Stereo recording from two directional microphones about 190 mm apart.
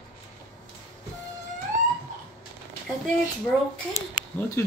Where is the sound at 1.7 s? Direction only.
40° right (ahead or behind).